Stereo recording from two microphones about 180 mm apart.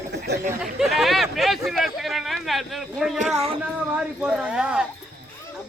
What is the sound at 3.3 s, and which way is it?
Speech, 35° right (ahead or behind).